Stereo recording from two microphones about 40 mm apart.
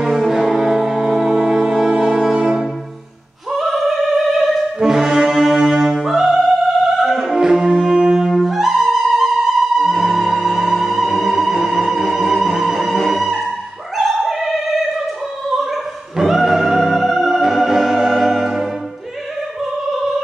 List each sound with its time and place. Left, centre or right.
0.2 s music: centre
3.5 s opera: centre
4.3 s brass instrument: centre
5.9 s opera: centre
7.3 s music: centre
13.9 s opera: centre
15.5 s music: centre